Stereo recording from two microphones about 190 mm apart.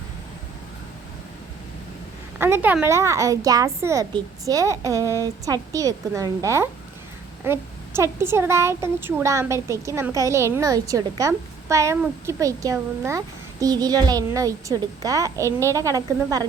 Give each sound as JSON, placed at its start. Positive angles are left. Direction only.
{"t": 2.4, "sound": "speech", "side_deg": -10}